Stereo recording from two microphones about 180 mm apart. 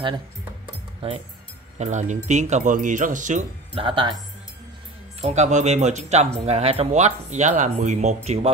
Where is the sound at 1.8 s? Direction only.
40° right (ahead or behind).